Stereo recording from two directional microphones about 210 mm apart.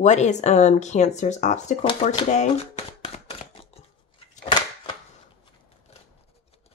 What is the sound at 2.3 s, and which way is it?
Shuffling cards, 35° left (ahead or behind).